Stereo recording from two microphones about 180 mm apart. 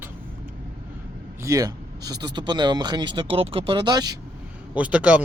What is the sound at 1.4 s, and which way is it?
Speech, 20° right (ahead or behind).